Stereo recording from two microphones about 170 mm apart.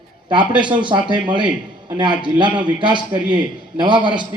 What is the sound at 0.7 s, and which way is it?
A man's voice, 30° right (ahead or behind).